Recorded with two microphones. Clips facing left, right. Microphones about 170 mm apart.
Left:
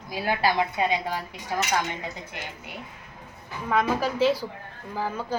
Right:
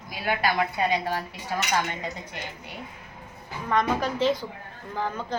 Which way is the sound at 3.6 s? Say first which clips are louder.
Even; 5° left (ahead or behind).